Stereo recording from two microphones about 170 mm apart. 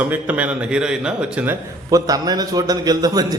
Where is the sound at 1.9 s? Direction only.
20° right (ahead or behind).